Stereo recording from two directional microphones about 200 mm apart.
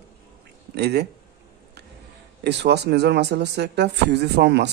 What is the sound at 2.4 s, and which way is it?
A man's voice, 60° right (ahead or behind).